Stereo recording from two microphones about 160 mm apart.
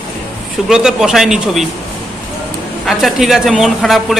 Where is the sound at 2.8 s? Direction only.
Centre (ahead or behind).